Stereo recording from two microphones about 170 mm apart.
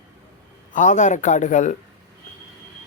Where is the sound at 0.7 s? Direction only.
45° left (ahead or behind).